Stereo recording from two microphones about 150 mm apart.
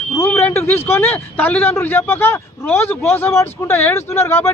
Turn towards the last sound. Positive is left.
turn(degrees=15)  # may be behind; listen again after turning